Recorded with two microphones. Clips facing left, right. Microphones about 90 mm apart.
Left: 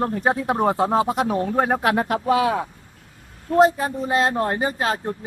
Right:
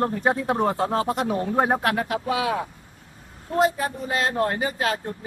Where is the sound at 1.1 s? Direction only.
5° left (ahead or behind).